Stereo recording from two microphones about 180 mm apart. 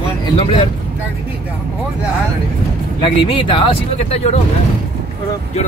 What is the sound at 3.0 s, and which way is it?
Speech, 30° left (ahead or behind).